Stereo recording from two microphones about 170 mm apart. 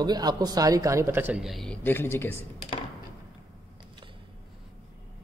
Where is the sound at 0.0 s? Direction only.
25° right (ahead or behind); by 2.3 s 15° left (ahead or behind).